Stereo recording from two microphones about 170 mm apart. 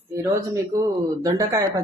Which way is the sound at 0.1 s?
20° right (ahead or behind).